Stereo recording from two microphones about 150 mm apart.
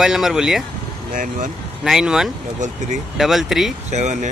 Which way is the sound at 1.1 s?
65° right (ahead or behind).